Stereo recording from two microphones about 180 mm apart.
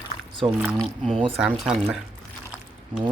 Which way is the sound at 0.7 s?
5° left (ahead or behind).